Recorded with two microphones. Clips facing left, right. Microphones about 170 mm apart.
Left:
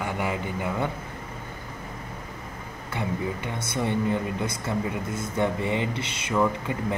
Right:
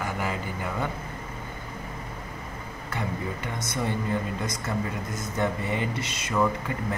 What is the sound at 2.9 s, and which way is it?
Speech, 20° left (ahead or behind).